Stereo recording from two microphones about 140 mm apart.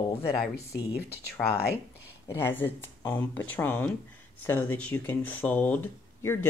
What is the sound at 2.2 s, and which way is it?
Speech, 15° left (ahead or behind).